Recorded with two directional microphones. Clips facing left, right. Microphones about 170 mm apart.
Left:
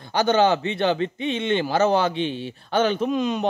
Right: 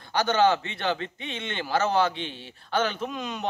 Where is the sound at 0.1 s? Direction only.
15° left (ahead or behind).